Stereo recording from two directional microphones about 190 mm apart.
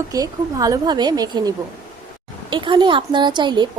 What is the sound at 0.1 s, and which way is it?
A woman's voice, 20° right (ahead or behind).